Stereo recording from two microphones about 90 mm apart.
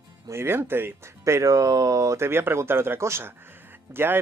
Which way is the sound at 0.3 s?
25° right (ahead or behind).